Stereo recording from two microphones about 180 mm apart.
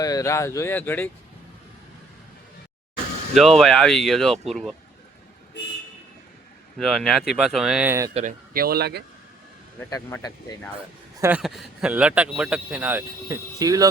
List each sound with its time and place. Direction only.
0.0 s speech: 20° left (ahead or behind)
3.3 s speech: centre (ahead or behind)
6.7 s speech: centre (ahead or behind)
8.1 s speech: 45° right (ahead or behind); by 9.0 s 60° right (ahead or behind)
9.9 s speech: 20° left (ahead or behind)
11.2 s a man's voice: 5° right (ahead or behind)